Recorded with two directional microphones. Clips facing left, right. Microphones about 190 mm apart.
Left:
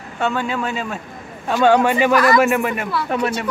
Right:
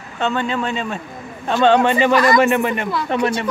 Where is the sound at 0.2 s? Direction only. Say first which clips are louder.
Right 1 dB; 10° left (ahead or behind).